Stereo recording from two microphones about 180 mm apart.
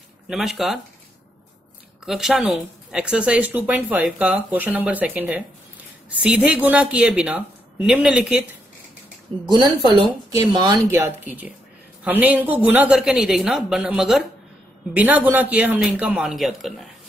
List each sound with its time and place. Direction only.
0.3 s speech: centre (ahead or behind)
2.0 s speech: centre (ahead or behind)
9.5 s speech: 25° right (ahead or behind); by 16.8 s centre (ahead or behind)